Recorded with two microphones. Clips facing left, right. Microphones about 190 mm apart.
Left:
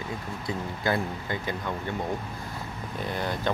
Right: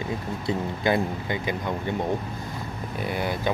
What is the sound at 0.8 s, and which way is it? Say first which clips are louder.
Speech: right 4 dB; 20° right (ahead or behind).